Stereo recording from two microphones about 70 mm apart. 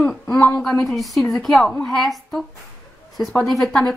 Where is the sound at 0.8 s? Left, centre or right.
Centre.